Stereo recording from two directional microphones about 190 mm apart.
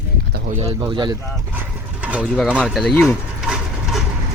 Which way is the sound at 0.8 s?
25° right (ahead or behind).